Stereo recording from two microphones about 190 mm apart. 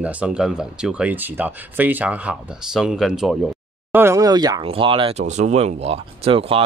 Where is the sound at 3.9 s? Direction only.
15° right (ahead or behind).